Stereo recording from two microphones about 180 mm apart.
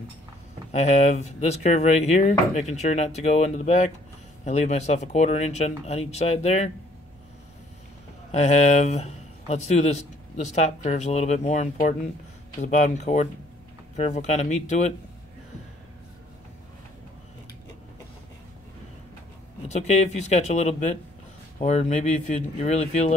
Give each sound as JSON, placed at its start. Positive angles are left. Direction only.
{"t": 0.7, "sound": "speech", "side_deg": 40}
{"t": 8.3, "sound": "speech", "side_deg": 40}
{"t": 19.7, "sound": "speech", "side_deg": 40}